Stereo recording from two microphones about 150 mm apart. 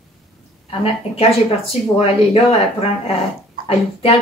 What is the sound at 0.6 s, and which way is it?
Speech, 40° left (ahead or behind).